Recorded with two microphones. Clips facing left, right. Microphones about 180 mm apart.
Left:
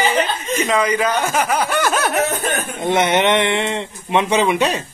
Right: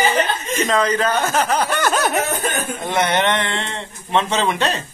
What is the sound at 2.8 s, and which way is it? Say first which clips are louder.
Speech: left 3 dB; 25° left (ahead or behind).